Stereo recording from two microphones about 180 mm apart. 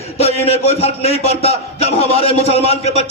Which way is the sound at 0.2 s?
35° left (ahead or behind).